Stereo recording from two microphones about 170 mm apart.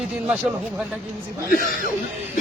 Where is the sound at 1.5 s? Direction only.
55° left (ahead or behind).